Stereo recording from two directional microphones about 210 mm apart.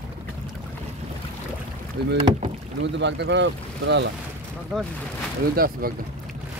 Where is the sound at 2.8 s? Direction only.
60° right (ahead or behind).